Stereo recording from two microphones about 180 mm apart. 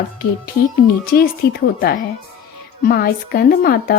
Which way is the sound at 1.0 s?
60° left (ahead or behind).